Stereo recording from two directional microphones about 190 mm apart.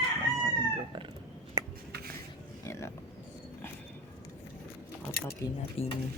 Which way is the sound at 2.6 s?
15° left (ahead or behind).